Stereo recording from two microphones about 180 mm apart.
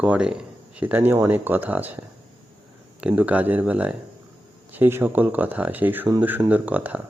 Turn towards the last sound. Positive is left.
turn(degrees=-10)  # may be behind; listen again after turning